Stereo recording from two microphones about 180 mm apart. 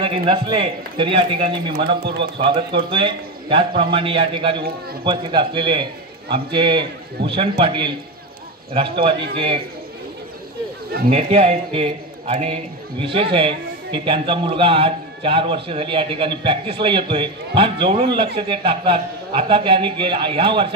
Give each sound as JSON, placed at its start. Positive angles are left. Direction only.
{"t": 0.0, "sound": "a man's voice", "side_deg": -30}
{"t": 2.3, "sound": "a man's voice", "side_deg": -30}
{"t": 11.1, "sound": "a man's voice", "side_deg": -35}